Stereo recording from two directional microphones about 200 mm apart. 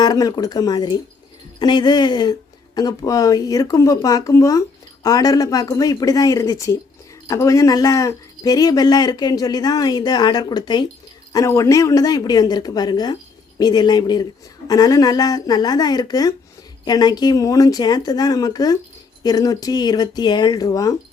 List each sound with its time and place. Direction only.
0.0 s speech: 20° left (ahead or behind)